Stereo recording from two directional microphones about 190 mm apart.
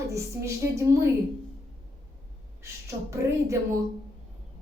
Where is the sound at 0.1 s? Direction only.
15° right (ahead or behind).